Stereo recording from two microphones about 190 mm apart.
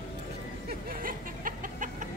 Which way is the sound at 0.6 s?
45° right (ahead or behind).